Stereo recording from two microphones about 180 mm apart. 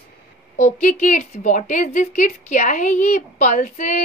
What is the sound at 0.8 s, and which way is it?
A woman's voice, 40° left (ahead or behind).